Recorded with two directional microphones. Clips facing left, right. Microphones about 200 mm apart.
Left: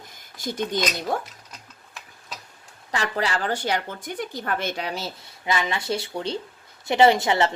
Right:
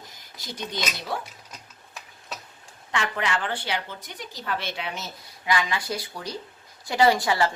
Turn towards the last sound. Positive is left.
turn(degrees=25)  # may be behind; listen again after turning